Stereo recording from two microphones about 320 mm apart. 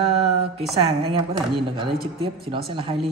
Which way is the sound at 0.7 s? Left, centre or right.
Centre.